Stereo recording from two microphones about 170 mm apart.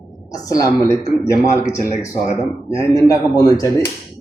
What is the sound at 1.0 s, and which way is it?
Speech, 40° left (ahead or behind).